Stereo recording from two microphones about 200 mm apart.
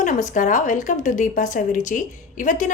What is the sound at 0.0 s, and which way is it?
A woman's voice, 40° left (ahead or behind).